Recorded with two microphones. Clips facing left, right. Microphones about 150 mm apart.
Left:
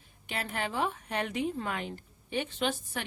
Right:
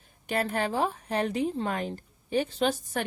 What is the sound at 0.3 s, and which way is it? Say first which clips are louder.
A woman's voice: right 7 dB; 40° right (ahead or behind).